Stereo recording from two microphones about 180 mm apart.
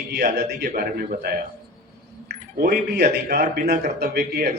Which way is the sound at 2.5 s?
55° right (ahead or behind).